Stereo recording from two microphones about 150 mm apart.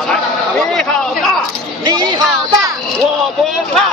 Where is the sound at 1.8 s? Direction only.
30° right (ahead or behind).